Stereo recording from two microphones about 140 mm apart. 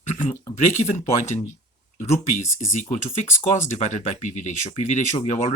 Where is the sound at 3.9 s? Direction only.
60° left (ahead or behind).